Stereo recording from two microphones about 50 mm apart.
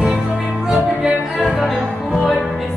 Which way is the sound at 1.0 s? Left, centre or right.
Centre.